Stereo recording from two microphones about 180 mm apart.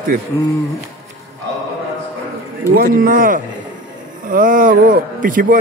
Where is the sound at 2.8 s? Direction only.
50° right (ahead or behind).